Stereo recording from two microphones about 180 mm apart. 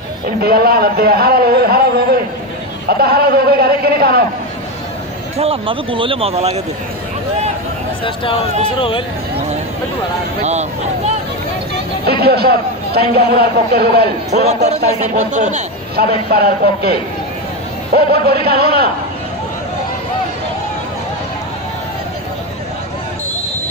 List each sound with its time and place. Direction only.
0.4 s a man's voice: 60° right (ahead or behind)
5.4 s speech: 30° right (ahead or behind)
8.0 s speech: 30° left (ahead or behind)
10.4 s speech: 40° right (ahead or behind)
11.7 s a sound: 60° right (ahead or behind)
13.1 s a man's voice: 60° right (ahead or behind)
15.0 s a man's voice: 45° right (ahead or behind)
16.3 s a man's voice: 60° right (ahead or behind)